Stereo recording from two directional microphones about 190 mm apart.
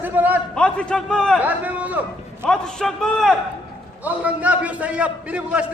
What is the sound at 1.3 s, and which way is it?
A man's voice, 10° right (ahead or behind).